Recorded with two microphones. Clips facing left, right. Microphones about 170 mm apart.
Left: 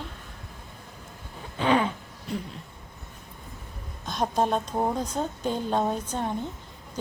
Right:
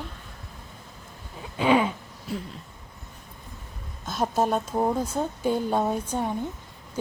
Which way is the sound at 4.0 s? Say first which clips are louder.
Right 1 dB; 5° right (ahead or behind).